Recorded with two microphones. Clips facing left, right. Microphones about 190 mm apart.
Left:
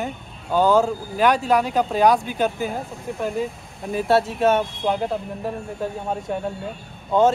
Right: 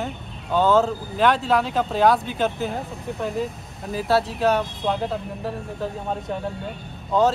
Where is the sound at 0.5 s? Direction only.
Centre (ahead or behind).